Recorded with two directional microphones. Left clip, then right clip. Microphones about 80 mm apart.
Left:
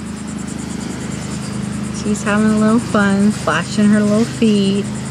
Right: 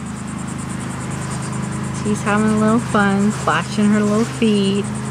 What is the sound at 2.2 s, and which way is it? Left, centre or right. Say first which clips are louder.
Speech: left 1 dB; centre.